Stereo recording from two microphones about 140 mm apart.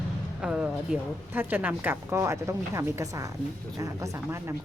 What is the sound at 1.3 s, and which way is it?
Speech, 15° right (ahead or behind).